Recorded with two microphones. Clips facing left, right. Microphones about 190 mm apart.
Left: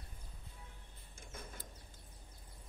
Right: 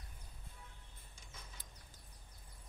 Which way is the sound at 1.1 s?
55° left (ahead or behind).